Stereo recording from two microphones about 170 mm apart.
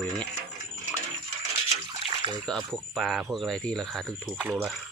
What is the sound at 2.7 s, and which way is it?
Speech, centre (ahead or behind).